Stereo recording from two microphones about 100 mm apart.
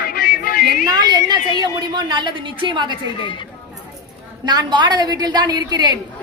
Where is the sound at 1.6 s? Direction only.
45° right (ahead or behind).